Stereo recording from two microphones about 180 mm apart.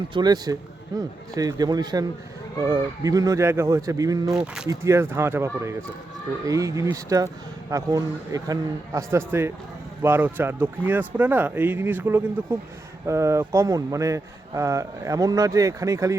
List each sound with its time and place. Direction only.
0.1 s speech: 25° right (ahead or behind)
4.3 s speech: 5° right (ahead or behind)